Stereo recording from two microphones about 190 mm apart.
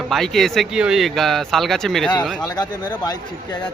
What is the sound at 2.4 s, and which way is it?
Speech, 20° left (ahead or behind).